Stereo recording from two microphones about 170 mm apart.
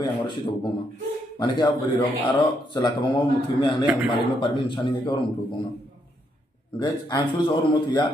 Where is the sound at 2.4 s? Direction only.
25° left (ahead or behind).